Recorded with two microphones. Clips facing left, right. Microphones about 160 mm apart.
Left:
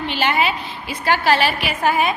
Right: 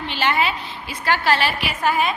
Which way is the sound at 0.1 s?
15° left (ahead or behind).